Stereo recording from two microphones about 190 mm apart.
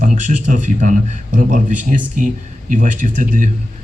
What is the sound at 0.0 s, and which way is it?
A man's voice, 40° right (ahead or behind).